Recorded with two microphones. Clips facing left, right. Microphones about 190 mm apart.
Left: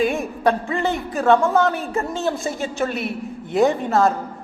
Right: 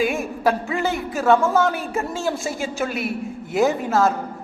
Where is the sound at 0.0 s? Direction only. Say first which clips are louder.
Left 1 dB; centre (ahead or behind).